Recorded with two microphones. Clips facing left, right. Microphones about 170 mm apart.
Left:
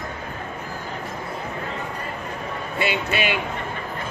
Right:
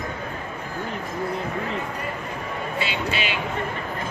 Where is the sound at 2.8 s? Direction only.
55° left (ahead or behind).